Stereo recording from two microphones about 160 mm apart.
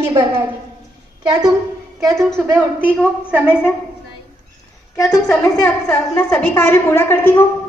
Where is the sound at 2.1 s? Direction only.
5° left (ahead or behind).